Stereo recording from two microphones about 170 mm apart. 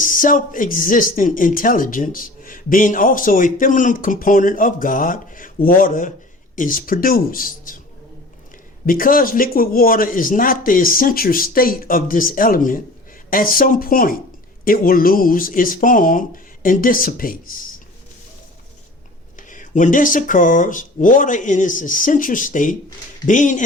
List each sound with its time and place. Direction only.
0.0 s speech: 50° left (ahead or behind)
8.9 s speech: 55° left (ahead or behind)
19.4 s speech: 50° left (ahead or behind)